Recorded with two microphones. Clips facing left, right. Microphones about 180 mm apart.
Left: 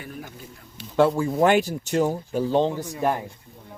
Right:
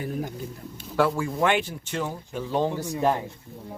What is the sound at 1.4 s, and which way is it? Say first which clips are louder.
Speech: left 5 dB; 40° left (ahead or behind).